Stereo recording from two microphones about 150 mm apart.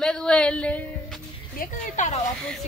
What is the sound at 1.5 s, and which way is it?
Speech, 55° left (ahead or behind).